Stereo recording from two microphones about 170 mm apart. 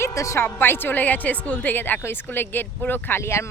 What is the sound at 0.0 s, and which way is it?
Speech, 20° left (ahead or behind).